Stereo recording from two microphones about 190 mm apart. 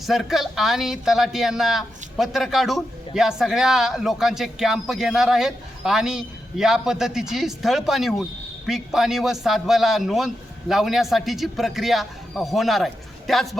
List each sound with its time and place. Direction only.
0.0 s speech: centre (ahead or behind)